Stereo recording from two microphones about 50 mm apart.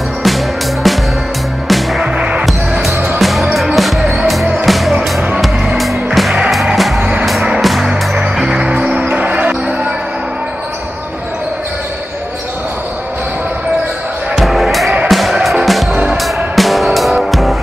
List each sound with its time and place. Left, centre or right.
1.7 s music: centre
2.1 s music: right
2.4 s music: centre
7.0 s vehicle: right
7.6 s music: centre
7.9 s music: centre
14.3 s music: centre
15.9 s music: right
16.5 s music: centre